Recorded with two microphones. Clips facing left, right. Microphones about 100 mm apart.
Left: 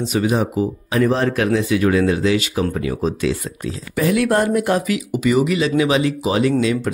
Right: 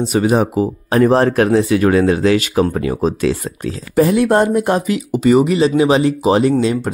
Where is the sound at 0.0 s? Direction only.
40° right (ahead or behind).